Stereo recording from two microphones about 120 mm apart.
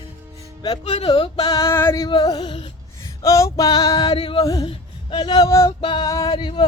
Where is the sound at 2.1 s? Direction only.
40° left (ahead or behind).